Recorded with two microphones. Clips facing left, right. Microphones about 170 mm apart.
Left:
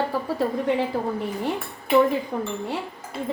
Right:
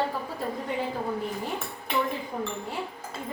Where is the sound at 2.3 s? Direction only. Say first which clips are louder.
Left 4 dB; 70° left (ahead or behind).